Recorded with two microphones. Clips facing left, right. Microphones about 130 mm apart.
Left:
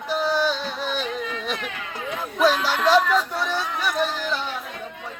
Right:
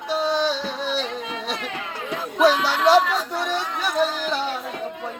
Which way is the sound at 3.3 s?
25° right (ahead or behind).